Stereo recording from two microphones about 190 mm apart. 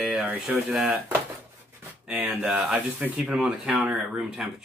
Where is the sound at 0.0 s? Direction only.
5° right (ahead or behind).